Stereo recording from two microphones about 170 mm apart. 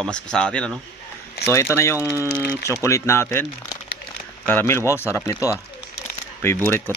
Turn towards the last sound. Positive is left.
turn(degrees=10)  # may be behind; listen again after turning